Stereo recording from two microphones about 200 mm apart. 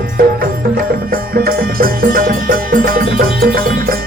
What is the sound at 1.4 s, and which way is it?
Music, 50° right (ahead or behind).